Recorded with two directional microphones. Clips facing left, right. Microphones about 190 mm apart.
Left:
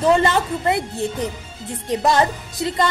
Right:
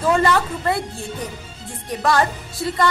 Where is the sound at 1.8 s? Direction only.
20° left (ahead or behind).